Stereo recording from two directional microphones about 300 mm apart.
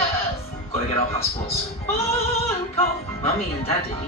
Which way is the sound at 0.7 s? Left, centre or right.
Centre.